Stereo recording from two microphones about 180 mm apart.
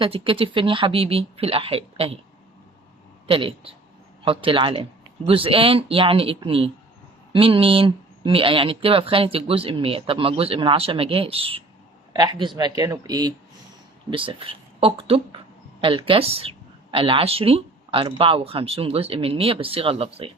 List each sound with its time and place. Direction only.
0.0 s speech: 30° right (ahead or behind)
3.2 s speech: 30° right (ahead or behind)